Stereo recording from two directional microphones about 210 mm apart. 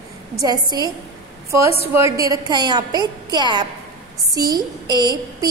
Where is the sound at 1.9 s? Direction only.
15° right (ahead or behind).